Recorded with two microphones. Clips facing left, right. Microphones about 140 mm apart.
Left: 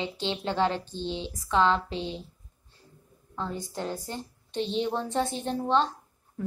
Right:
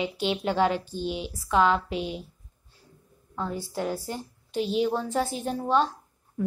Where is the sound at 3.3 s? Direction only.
5° right (ahead or behind).